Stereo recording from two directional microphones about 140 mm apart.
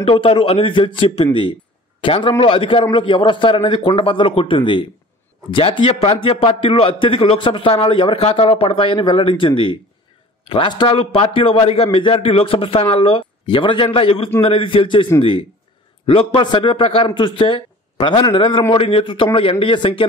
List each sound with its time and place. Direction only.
0.0 s a man's voice: 40° left (ahead or behind)
16.1 s a man's voice: 40° left (ahead or behind)